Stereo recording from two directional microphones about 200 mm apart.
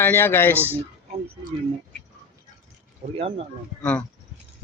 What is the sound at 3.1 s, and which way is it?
Speech, 30° right (ahead or behind).